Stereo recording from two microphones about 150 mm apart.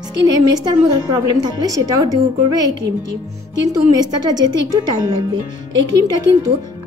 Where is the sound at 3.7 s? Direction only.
25° right (ahead or behind).